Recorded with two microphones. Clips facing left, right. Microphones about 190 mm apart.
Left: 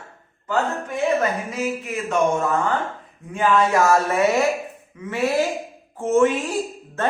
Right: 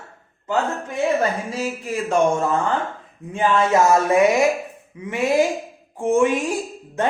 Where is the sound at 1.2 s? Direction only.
35° right (ahead or behind).